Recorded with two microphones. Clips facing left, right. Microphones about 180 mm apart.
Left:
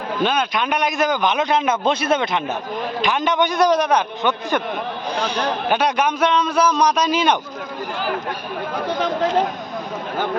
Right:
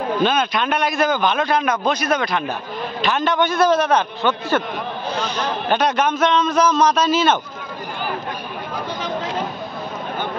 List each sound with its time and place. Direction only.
0.2 s a man's voice: 10° left (ahead or behind)